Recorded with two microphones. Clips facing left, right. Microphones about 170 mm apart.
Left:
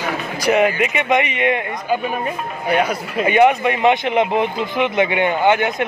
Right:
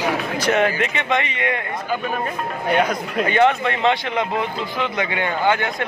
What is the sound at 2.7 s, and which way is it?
A man's voice, 5° left (ahead or behind).